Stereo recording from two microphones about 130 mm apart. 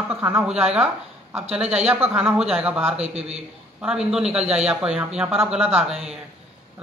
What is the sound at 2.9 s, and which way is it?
Speech, 50° right (ahead or behind).